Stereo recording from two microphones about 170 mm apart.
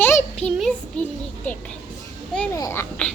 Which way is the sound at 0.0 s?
15° left (ahead or behind).